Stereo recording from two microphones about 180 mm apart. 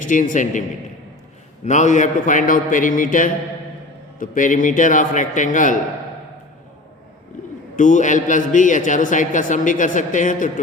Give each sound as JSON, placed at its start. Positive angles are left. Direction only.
{"t": 0.0, "sound": "a man's voice", "side_deg": 45}
{"t": 1.6, "sound": "a man's voice", "side_deg": 40}
{"t": 7.8, "sound": "a man's voice", "side_deg": 45}